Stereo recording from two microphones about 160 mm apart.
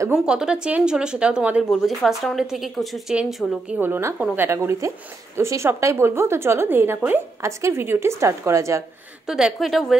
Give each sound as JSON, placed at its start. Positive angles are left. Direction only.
{"t": 0.1, "sound": "a woman's voice", "side_deg": -5}
{"t": 9.2, "sound": "a woman's voice", "side_deg": -5}